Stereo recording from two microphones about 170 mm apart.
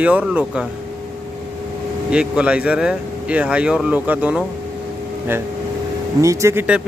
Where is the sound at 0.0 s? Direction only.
5° right (ahead or behind).